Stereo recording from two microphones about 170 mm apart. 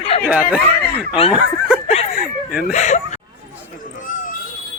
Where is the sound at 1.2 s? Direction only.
35° left (ahead or behind).